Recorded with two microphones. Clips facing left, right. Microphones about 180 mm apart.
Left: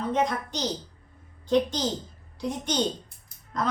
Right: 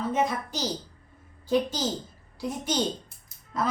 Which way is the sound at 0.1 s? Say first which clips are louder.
Left 3 dB; 5° right (ahead or behind).